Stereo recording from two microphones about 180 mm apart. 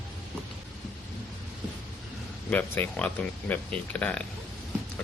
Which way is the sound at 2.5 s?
10° left (ahead or behind).